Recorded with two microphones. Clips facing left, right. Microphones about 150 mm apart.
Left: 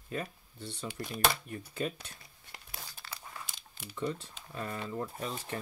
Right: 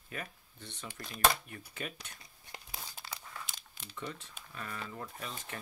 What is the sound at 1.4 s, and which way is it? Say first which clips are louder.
Speech: left 7 dB; 30° left (ahead or behind).